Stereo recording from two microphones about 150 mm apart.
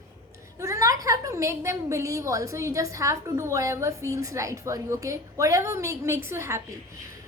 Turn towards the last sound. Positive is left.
turn(degrees=-20)  # may be behind; listen again after turning